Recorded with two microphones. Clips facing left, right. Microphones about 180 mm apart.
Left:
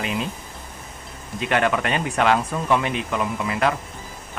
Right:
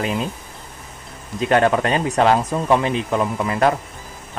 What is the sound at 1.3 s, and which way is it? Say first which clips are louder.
Speech: right 5 dB; 35° right (ahead or behind).